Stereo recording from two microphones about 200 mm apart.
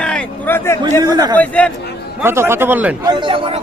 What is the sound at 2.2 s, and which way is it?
Speech, 10° right (ahead or behind).